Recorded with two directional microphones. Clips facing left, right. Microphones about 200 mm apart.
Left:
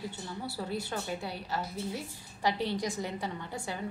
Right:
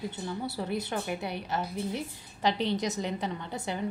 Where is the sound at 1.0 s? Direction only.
20° right (ahead or behind).